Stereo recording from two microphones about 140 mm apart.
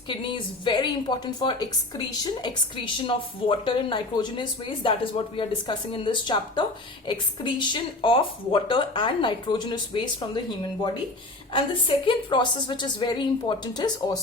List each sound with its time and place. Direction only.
0.1 s a woman's voice: 35° left (ahead or behind)